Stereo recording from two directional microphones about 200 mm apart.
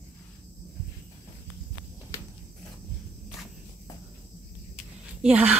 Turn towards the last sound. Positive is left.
turn(degrees=-5)  # may be behind; listen again after turning